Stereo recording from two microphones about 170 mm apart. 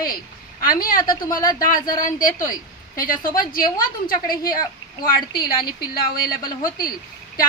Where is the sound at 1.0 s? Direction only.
25° left (ahead or behind).